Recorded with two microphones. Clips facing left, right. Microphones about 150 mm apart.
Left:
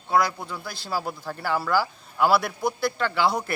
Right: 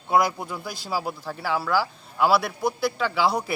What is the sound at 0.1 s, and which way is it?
A man's voice, 15° right (ahead or behind).